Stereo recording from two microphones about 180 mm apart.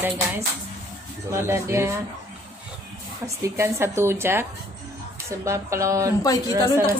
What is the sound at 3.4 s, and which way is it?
Child singing, 15° right (ahead or behind).